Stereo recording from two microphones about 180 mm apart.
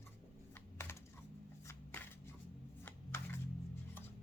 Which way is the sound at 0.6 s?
10° left (ahead or behind).